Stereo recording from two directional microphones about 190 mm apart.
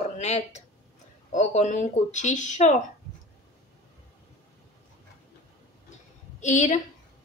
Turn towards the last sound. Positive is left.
turn(degrees=40)  # may be behind; listen again after turning